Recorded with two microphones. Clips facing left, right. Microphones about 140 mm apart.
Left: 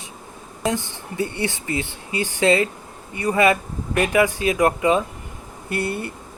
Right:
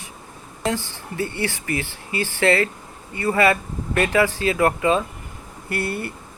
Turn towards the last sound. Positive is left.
turn(degrees=20)  # may be behind; listen again after turning